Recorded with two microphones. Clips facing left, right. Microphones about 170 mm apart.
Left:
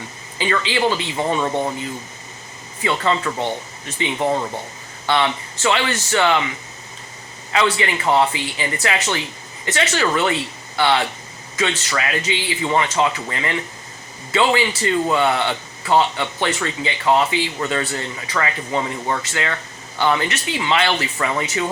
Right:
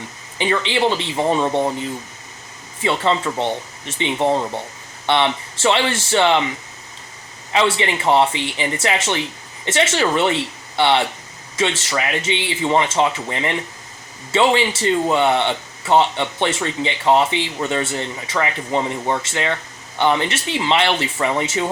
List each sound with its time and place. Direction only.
0.3 s speech: 20° right (ahead or behind)
2.8 s speech: 25° right (ahead or behind)
7.5 s speech: 25° right (ahead or behind)